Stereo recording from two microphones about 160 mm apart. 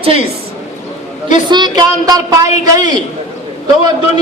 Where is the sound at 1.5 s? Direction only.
25° right (ahead or behind).